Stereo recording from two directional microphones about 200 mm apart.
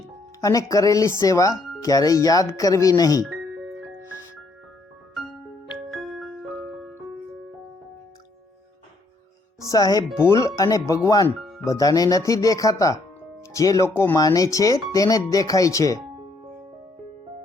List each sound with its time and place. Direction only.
0.4 s speech: 15° left (ahead or behind)
5.7 s music: centre (ahead or behind)
9.6 s speech: 15° left (ahead or behind)